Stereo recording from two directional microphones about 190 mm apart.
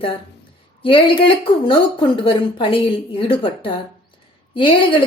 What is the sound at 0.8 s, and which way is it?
Speech, 30° left (ahead or behind).